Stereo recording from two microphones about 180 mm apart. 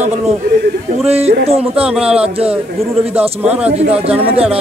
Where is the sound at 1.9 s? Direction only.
5° right (ahead or behind).